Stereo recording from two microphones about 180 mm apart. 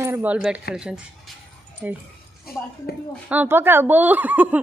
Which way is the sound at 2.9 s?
60° left (ahead or behind).